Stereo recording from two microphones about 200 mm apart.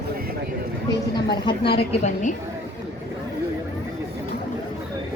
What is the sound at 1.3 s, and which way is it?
A woman's voice, 25° left (ahead or behind).